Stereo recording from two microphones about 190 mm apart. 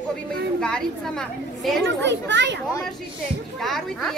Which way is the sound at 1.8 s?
70° right (ahead or behind).